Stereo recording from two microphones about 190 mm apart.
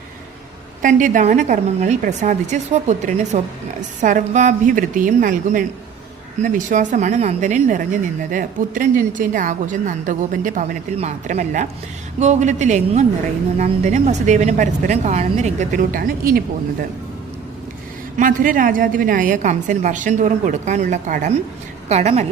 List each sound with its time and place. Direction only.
0.8 s a woman's voice: 45° right (ahead or behind)
18.2 s a woman's voice: 45° right (ahead or behind)